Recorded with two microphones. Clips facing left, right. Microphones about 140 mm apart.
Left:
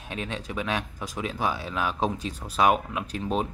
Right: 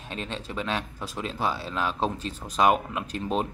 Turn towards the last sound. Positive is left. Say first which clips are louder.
# even
turn(degrees=0)  # may be behind; listen again after turning